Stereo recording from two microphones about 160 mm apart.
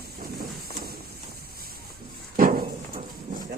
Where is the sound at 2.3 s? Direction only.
60° right (ahead or behind).